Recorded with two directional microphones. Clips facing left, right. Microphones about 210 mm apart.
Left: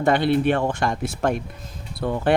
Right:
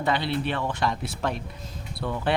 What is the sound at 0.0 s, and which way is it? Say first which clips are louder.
Speech: left 8 dB; 50° left (ahead or behind).